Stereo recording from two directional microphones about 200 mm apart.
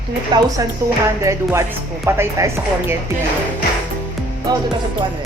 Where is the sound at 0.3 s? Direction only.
20° right (ahead or behind).